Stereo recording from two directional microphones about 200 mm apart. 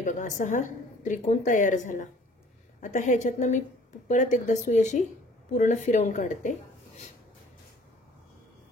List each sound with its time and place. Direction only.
0.0 s a woman's voice: 40° left (ahead or behind)